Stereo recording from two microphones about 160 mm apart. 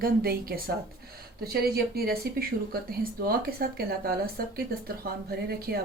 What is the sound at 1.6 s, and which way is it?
A woman's voice, 75° right (ahead or behind).